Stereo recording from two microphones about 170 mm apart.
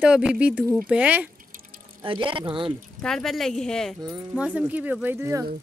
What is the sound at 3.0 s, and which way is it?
Speech, 5° left (ahead or behind).